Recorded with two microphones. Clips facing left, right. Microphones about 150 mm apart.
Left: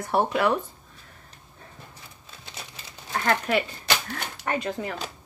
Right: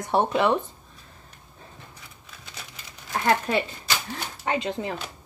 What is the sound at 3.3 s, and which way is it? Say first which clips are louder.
A woman's voice: right 1 dB; 25° right (ahead or behind).